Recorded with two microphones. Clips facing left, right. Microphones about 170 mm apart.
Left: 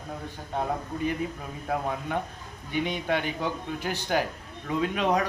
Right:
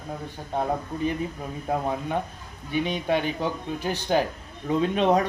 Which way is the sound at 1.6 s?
20° right (ahead or behind).